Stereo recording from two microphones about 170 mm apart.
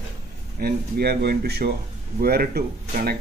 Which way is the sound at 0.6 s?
65° right (ahead or behind).